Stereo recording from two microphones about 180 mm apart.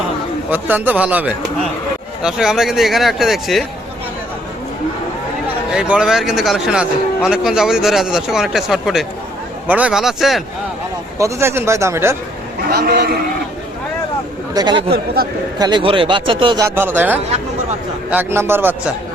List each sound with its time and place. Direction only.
0.5 s a man's voice: 10° right (ahead or behind)
5.7 s a man's voice: 5° right (ahead or behind)
11.2 s speech: 15° right (ahead or behind)
12.7 s a man's voice: 65° right (ahead or behind)
14.5 s a man's voice: 25° right (ahead or behind)
14.8 s a man's voice: 60° right (ahead or behind)
15.5 s a man's voice: 25° right (ahead or behind)
16.6 s speech: 10° right (ahead or behind)